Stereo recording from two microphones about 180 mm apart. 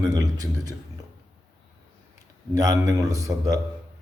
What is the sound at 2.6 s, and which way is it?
A man's voice, 20° right (ahead or behind).